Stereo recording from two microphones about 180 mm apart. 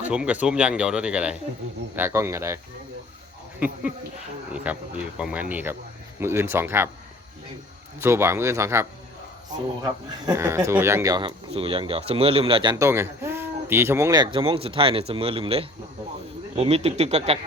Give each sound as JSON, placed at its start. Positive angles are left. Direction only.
{"t": 0.0, "sound": "speech", "side_deg": -5}
{"t": 4.5, "sound": "speech", "side_deg": -5}
{"t": 8.0, "sound": "speech", "side_deg": -15}
{"t": 12.7, "sound": "speech", "side_deg": -15}